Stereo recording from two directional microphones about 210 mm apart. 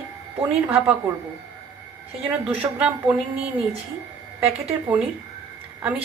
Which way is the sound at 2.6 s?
5° right (ahead or behind).